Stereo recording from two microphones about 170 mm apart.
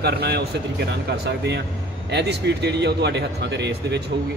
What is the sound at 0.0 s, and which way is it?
A man's voice, 75° right (ahead or behind).